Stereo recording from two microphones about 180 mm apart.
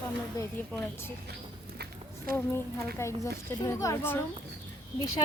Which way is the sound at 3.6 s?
15° left (ahead or behind).